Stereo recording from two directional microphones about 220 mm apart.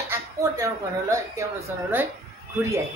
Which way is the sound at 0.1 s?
15° right (ahead or behind).